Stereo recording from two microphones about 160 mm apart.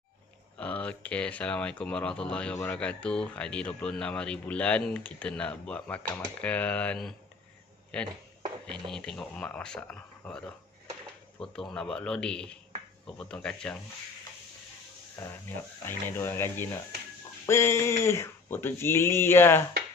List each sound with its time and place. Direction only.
0.6 s speech: 10° left (ahead or behind)
15.2 s speech: 10° left (ahead or behind)